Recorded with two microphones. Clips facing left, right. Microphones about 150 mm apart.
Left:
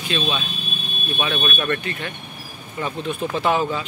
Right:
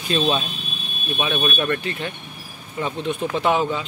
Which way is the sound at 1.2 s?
15° right (ahead or behind).